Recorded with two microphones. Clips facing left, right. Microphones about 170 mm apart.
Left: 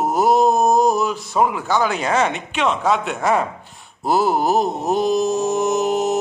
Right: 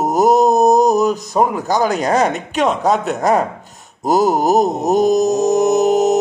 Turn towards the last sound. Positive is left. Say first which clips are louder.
# right 6 dB
turn(degrees=-40)  # may be behind; listen again after turning